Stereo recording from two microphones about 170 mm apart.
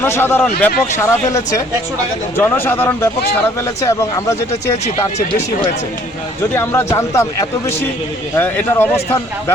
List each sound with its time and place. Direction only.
0.0 s a man's voice: 15° left (ahead or behind)
6.5 s a man's voice: 15° left (ahead or behind)